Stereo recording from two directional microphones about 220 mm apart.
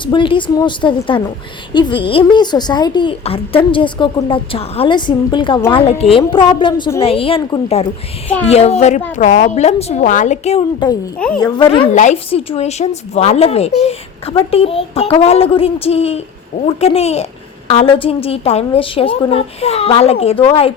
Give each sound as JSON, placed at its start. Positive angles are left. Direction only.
{"t": 0.0, "sound": "a woman's voice", "side_deg": 20}